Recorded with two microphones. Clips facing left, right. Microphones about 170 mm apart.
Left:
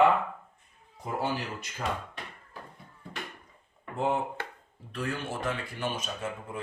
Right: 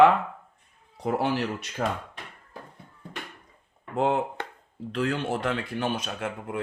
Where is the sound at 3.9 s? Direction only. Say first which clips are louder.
Right 4 dB; 75° right (ahead or behind).